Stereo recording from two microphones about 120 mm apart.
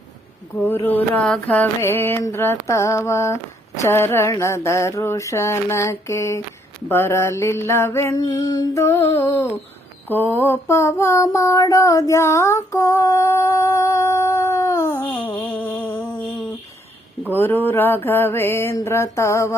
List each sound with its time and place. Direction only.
0.6 s mantra: 15° left (ahead or behind)
8.1 s mantra: 35° left (ahead or behind)
15.1 s a sound: 15° left (ahead or behind)
17.3 s mantra: 15° left (ahead or behind)